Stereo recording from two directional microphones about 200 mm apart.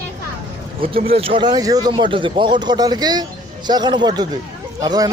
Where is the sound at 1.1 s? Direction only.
30° right (ahead or behind).